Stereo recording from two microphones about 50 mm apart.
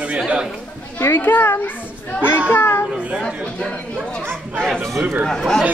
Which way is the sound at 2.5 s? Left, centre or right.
Left.